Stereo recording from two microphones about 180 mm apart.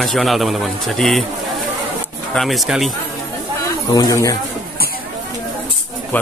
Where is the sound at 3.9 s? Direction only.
20° left (ahead or behind).